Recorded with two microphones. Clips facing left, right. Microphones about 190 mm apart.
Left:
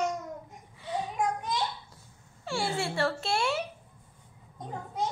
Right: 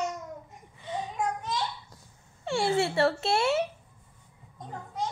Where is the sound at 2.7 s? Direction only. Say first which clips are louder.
Right 6 dB; centre (ahead or behind).